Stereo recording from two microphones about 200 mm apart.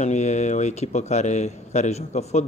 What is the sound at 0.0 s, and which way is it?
Speech, 35° left (ahead or behind).